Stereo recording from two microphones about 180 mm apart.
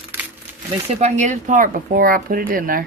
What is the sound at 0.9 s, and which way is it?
Speech, 40° right (ahead or behind).